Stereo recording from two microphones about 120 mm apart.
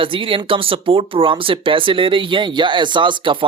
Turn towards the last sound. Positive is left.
turn(degrees=-45)  # may be behind; listen again after turning